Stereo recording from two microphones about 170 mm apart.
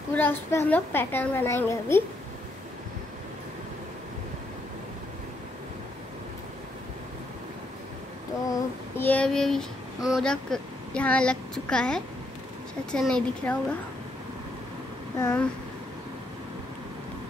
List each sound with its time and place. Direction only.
0.1 s a child's voice: 10° left (ahead or behind)
8.5 s child singing: 15° left (ahead or behind)
12.9 s a woman's voice: 5° left (ahead or behind)
15.1 s a child's voice: 15° left (ahead or behind)